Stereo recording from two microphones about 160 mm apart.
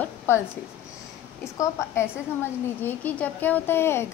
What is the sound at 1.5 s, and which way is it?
Speech, 15° left (ahead or behind).